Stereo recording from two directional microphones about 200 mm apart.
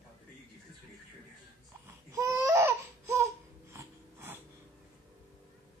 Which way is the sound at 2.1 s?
15° right (ahead or behind).